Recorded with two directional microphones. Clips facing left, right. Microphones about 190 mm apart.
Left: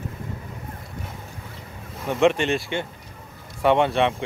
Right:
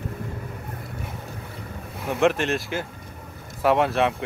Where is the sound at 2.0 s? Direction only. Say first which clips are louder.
Left 2 dB; centre (ahead or behind).